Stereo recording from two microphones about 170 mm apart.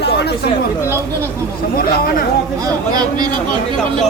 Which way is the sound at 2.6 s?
20° right (ahead or behind).